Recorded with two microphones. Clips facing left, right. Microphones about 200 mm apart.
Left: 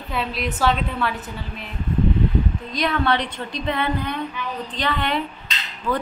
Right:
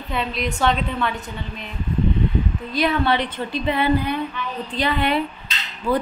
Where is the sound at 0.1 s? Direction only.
5° left (ahead or behind).